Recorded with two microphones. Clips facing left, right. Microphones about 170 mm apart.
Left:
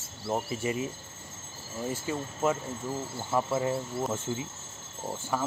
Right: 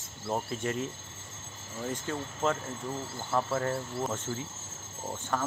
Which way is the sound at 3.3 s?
15° left (ahead or behind).